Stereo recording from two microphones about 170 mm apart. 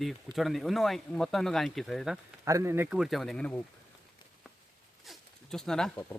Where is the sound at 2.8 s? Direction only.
5° right (ahead or behind).